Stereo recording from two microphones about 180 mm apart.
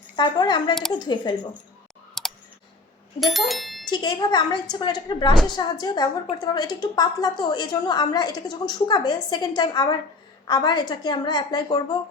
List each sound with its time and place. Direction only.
0.2 s a woman's voice: 25° left (ahead or behind)
2.2 s clicking: centre (ahead or behind)
3.2 s speech: centre (ahead or behind)
3.9 s a woman's voice: 25° left (ahead or behind)